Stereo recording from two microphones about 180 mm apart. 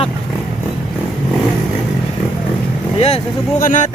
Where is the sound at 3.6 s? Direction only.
45° left (ahead or behind).